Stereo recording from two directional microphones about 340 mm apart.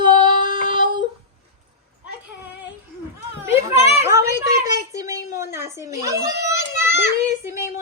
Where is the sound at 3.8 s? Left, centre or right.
Centre.